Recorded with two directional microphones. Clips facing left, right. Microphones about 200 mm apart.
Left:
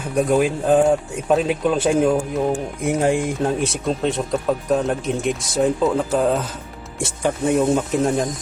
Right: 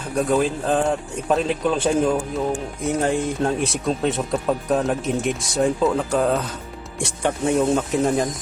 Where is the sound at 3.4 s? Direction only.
Centre (ahead or behind).